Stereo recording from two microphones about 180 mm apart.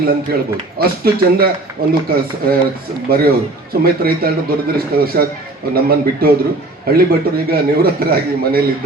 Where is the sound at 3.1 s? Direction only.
55° right (ahead or behind).